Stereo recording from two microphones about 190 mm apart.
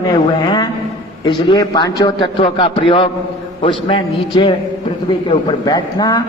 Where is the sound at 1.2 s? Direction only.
25° left (ahead or behind).